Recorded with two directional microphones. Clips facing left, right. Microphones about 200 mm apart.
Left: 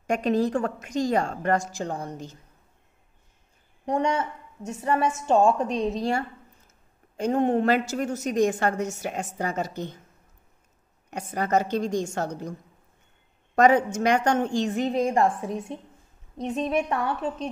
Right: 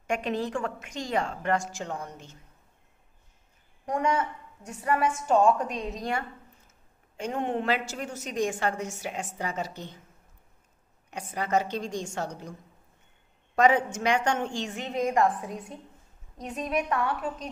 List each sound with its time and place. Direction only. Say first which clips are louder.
0.0 s a woman's voice: left 6 dB; 40° left (ahead or behind)
3.8 s a woman's voice: left 2 dB; 25° left (ahead or behind); by 9.9 s 45° left (ahead or behind)
11.1 s a woman's voice: left 4 dB; 45° left (ahead or behind)
13.6 s a woman's voice: left 4 dB; 40° left (ahead or behind); by 17.5 s 25° left (ahead or behind)